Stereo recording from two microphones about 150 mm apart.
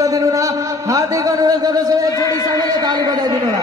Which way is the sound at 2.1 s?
20° left (ahead or behind).